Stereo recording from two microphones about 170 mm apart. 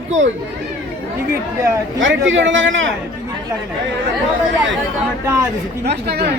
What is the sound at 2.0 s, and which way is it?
Speech, 90° right.